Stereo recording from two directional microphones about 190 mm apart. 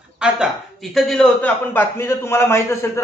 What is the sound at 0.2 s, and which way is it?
A man's voice, centre (ahead or behind).